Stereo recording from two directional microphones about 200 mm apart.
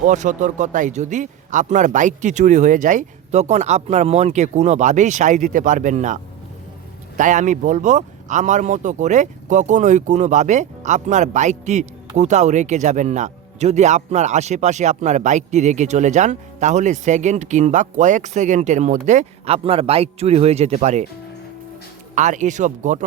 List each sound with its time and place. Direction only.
0.0 s speech: 40° right (ahead or behind)
7.2 s speech: 40° right (ahead or behind)
22.1 s speech: 40° right (ahead or behind)